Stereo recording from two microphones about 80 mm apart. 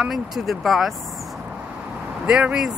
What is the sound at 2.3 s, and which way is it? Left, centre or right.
Speech, centre.